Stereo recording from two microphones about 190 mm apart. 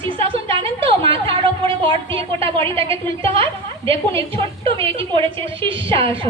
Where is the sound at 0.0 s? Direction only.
30° right (ahead or behind).